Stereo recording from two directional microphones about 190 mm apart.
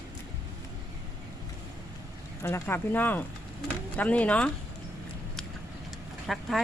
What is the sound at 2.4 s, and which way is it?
Speech, 10° left (ahead or behind).